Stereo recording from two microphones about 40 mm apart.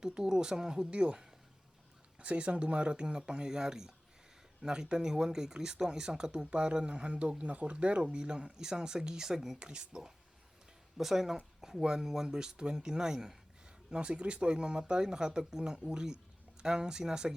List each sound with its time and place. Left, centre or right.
0.0 s speech: centre
10.9 s speech: centre
13.9 s speech: right